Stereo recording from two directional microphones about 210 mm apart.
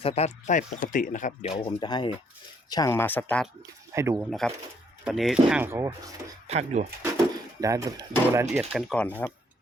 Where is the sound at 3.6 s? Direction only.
15° right (ahead or behind).